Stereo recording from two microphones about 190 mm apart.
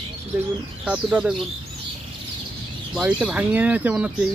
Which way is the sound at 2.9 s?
5° right (ahead or behind).